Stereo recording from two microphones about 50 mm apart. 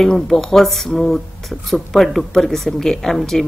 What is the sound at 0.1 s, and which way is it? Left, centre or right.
A woman's voice, centre.